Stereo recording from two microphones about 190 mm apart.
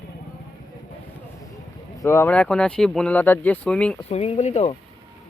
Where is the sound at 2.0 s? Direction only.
15° left (ahead or behind).